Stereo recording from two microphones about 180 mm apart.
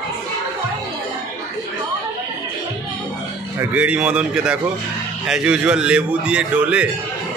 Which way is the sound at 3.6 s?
10° right (ahead or behind).